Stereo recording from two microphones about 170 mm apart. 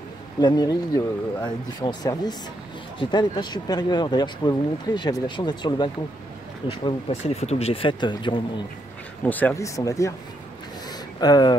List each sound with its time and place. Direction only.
0.4 s speech: 25° left (ahead or behind)
9.2 s speech: 10° left (ahead or behind)
11.1 s speech: 25° left (ahead or behind)